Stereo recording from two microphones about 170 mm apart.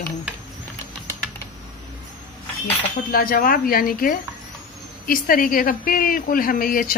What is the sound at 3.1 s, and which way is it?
A woman's voice, 55° left (ahead or behind).